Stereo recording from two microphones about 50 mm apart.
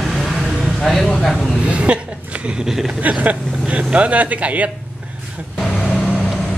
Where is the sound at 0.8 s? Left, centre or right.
Centre.